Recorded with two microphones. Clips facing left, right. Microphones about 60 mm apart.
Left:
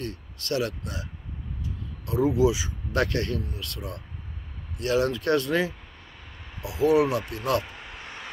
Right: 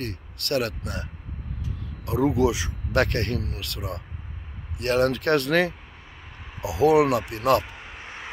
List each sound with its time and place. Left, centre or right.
0.0 s speech: right
2.0 s speech: right
4.7 s speech: right
6.6 s speech: right
7.6 s vehicle: centre